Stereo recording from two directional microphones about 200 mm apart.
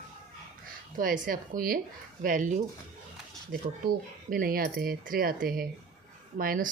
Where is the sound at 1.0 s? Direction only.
45° right (ahead or behind).